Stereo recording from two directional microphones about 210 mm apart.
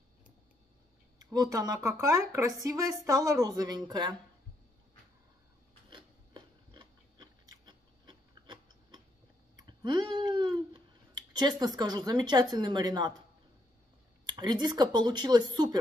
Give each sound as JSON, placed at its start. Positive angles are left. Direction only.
{"t": 1.2, "sound": "speech", "side_deg": -20}
{"t": 5.9, "sound": "biting", "side_deg": -20}
{"t": 9.6, "sound": "a sound", "side_deg": -20}
{"t": 14.2, "sound": "speech", "side_deg": -20}